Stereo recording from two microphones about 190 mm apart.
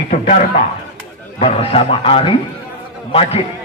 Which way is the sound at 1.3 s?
30° left (ahead or behind).